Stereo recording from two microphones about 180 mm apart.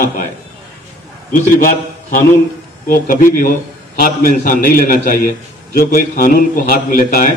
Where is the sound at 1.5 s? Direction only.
55° left (ahead or behind).